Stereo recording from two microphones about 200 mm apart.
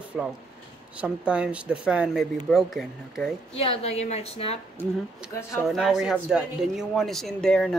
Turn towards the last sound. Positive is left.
turn(degrees=5)  # may be behind; listen again after turning